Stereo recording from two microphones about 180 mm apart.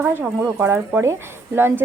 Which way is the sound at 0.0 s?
10° right (ahead or behind).